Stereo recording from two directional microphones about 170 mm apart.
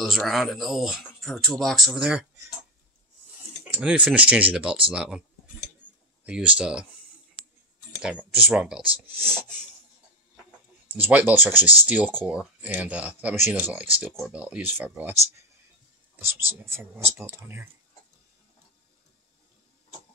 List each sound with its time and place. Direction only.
0.0 s speech: centre (ahead or behind)
3.6 s speech: 5° right (ahead or behind)
8.0 s speech: 5° right (ahead or behind)
9.2 s speech: 5° left (ahead or behind)
11.0 s speech: 10° right (ahead or behind)
16.7 s speech: 15° right (ahead or behind)